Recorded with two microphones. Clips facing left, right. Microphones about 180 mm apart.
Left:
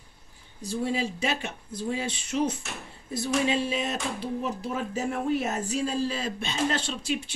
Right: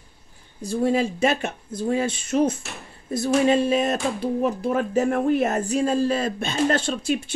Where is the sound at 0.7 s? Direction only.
50° right (ahead or behind).